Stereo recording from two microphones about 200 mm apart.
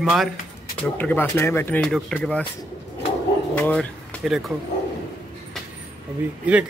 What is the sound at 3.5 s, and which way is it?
Pigeon, 5° left (ahead or behind).